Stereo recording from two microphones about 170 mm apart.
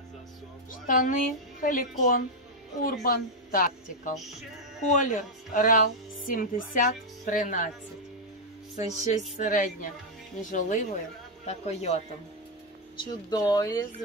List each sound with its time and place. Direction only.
0.8 s a woman's voice: 50° left (ahead or behind)
8.7 s speech: 45° left (ahead or behind)
12.9 s speech: 25° left (ahead or behind)